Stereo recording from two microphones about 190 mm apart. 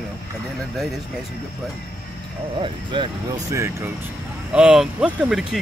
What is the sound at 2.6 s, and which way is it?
Speech, 25° right (ahead or behind).